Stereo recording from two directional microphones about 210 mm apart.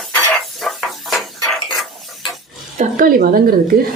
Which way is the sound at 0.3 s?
Centre (ahead or behind).